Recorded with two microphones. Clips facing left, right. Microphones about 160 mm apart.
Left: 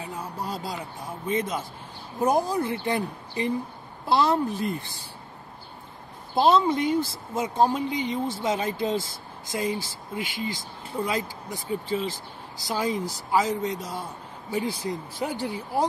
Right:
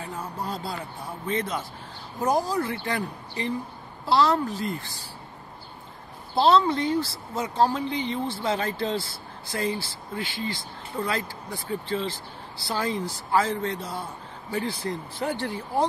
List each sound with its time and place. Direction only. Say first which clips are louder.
0.0 s a sound: even; 10° left (ahead or behind)
2.2 s a woman's voice: left 1 dB; 20° left (ahead or behind)
6.4 s speech: even; 15° left (ahead or behind)